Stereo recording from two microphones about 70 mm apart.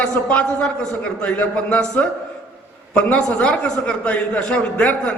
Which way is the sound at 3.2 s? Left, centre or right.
Centre.